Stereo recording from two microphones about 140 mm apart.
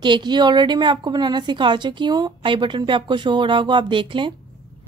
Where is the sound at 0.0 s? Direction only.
35° right (ahead or behind).